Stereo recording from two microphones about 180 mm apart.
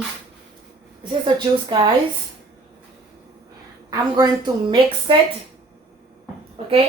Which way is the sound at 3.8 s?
20° right (ahead or behind).